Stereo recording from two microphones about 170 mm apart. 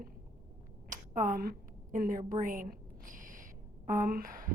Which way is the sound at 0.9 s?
50° right (ahead or behind).